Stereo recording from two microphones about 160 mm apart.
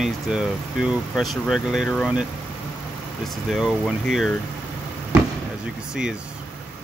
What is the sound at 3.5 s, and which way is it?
Speech, centre (ahead or behind).